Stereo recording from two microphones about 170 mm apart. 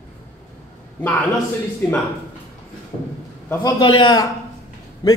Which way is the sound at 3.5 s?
20° left (ahead or behind).